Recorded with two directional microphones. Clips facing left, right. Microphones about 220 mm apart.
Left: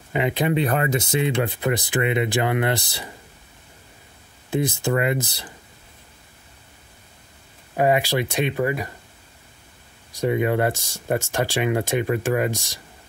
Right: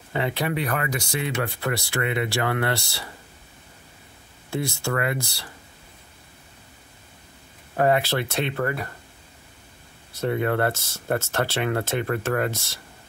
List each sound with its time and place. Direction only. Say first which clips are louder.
0.1 s speech: left 4 dB; 15° left (ahead or behind)
4.5 s speech: left 5 dB; 20° left (ahead or behind)
7.7 s speech: left 1 dB; 15° left (ahead or behind)
10.1 s speech: left 3 dB; 15° left (ahead or behind)